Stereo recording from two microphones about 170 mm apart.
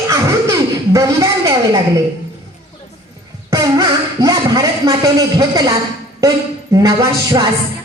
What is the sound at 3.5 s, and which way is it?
Speech, 20° right (ahead or behind).